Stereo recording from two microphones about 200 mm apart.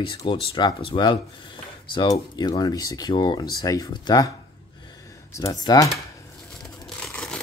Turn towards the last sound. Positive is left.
turn(degrees=5)  # may be behind; listen again after turning